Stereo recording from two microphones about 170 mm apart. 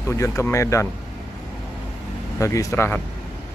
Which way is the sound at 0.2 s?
15° left (ahead or behind).